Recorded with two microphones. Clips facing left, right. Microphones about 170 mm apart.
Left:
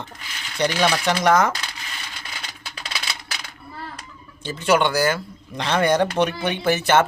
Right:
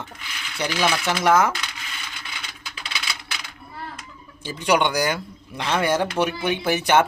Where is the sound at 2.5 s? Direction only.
40° left (ahead or behind).